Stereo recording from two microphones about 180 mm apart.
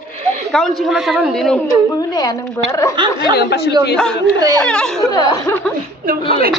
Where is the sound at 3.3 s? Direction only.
65° left (ahead or behind).